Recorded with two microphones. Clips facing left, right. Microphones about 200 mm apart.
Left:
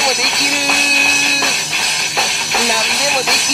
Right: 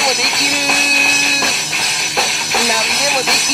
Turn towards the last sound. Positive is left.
turn(degrees=0)  # may be behind; listen again after turning